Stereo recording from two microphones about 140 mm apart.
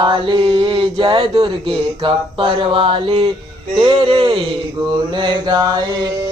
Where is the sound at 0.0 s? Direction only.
35° right (ahead or behind).